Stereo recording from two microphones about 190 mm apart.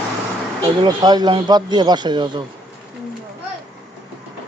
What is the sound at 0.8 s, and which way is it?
Speech, 20° right (ahead or behind).